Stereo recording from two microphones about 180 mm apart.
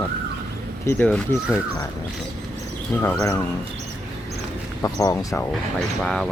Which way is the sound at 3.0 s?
15° left (ahead or behind).